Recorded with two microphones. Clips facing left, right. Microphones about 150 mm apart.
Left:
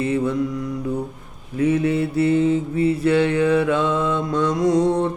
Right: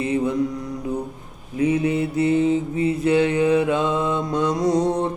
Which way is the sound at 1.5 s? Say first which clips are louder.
Left 1 dB; 15° right (ahead or behind).